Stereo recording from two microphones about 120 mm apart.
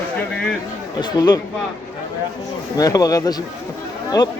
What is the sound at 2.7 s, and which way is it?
Speech, 30° left (ahead or behind).